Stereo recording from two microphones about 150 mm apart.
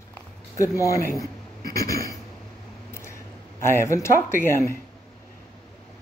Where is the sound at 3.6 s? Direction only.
15° left (ahead or behind).